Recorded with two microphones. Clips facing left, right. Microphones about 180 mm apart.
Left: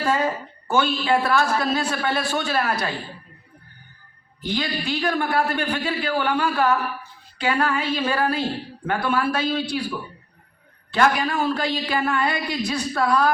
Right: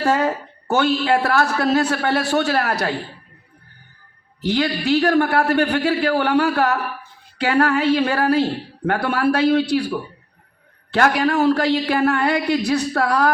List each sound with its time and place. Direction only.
0.0 s a woman's voice: 65° right (ahead or behind)
4.4 s a woman's voice: 65° right (ahead or behind)
10.9 s a woman's voice: 65° right (ahead or behind)